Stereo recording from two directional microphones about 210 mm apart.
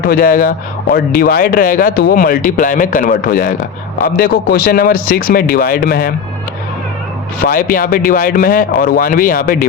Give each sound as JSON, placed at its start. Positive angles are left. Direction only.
{"t": 0.0, "sound": "speech", "side_deg": 45}
{"t": 7.3, "sound": "speech", "side_deg": 45}